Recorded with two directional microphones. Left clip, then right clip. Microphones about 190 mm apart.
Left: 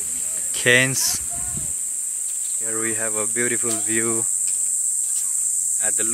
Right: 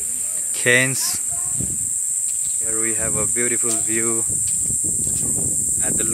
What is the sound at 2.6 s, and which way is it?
Speech, centre (ahead or behind).